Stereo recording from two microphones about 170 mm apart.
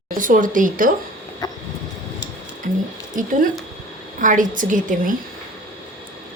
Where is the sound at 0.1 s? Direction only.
50° right (ahead or behind).